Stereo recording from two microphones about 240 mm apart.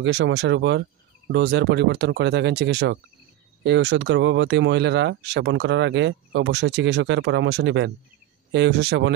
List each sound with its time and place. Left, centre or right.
0.0 s speech: right